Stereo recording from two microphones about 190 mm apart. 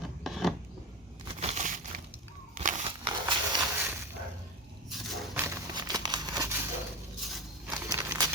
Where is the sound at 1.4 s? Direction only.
35° right (ahead or behind).